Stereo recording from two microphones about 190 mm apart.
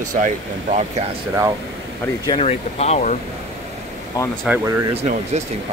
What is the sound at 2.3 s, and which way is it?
Speech, 30° left (ahead or behind).